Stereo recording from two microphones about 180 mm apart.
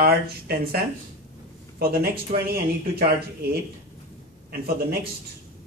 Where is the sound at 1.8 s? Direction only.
60° right (ahead or behind).